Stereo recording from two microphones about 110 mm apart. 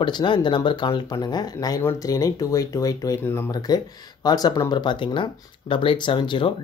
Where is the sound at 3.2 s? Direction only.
20° left (ahead or behind).